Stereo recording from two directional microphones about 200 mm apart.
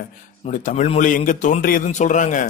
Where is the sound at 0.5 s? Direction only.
40° left (ahead or behind).